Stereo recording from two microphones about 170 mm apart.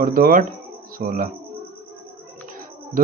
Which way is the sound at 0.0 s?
55° right (ahead or behind).